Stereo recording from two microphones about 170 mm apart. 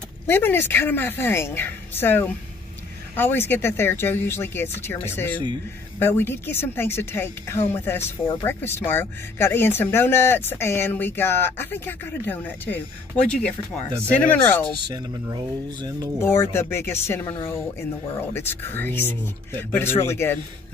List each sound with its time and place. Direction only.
0.3 s speech: 10° left (ahead or behind)
14.9 s speech: 25° right (ahead or behind)
16.2 s speech: 15° left (ahead or behind)